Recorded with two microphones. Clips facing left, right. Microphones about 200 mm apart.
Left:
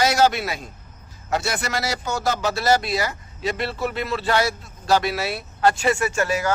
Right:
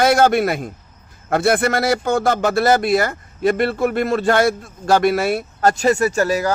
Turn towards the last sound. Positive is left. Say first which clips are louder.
# right 5 dB
turn(degrees=-40)  # may be behind; listen again after turning